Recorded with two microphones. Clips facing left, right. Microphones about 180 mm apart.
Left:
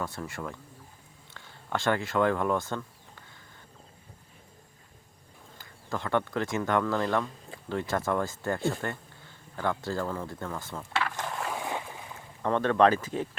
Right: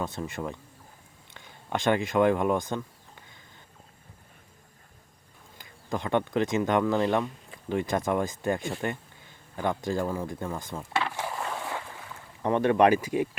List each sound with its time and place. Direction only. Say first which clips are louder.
0.0 s speech: right 3 dB; 20° right (ahead or behind)
5.5 s speech: right 3 dB; 15° right (ahead or behind)
11.4 s a sound: left 1 dB; 15° left (ahead or behind)
12.4 s speech: right 1 dB; 15° right (ahead or behind)